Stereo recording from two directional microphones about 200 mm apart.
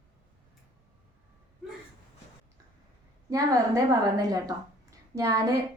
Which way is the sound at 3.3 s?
15° right (ahead or behind).